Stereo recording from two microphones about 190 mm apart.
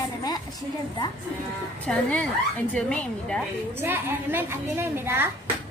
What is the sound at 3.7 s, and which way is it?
A woman's voice, 10° right (ahead or behind).